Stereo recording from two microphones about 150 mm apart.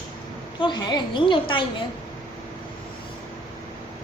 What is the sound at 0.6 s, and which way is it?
A woman's voice, 30° left (ahead or behind).